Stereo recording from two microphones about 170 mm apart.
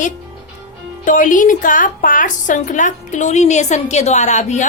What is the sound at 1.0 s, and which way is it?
A woman's voice, 50° left (ahead or behind).